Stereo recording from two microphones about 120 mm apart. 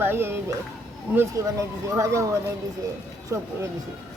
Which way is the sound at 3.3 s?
25° right (ahead or behind).